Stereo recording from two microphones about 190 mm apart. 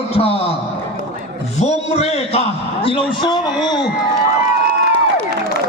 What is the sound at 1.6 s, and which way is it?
A man's voice, 35° left (ahead or behind).